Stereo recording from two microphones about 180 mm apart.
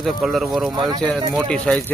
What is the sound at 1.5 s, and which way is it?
Speech, 5° left (ahead or behind).